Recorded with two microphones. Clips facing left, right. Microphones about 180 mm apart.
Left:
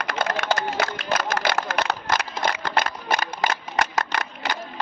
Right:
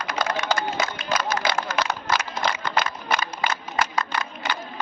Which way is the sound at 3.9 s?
70° left (ahead or behind).